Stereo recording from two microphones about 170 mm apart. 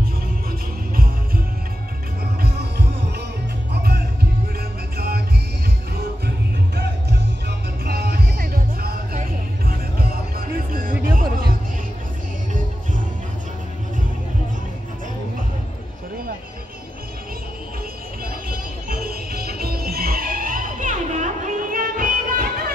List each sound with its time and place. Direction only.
0.5 s music: 60° right (ahead or behind)
4.9 s music: 65° right (ahead or behind)
6.2 s music: 70° right (ahead or behind); by 11.2 s 55° right (ahead or behind)
18.2 s music: 60° right (ahead or behind)